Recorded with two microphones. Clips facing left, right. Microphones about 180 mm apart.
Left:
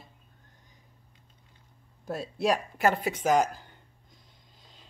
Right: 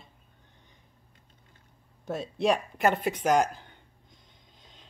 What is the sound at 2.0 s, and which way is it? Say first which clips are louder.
Speech: right 2 dB; 5° left (ahead or behind).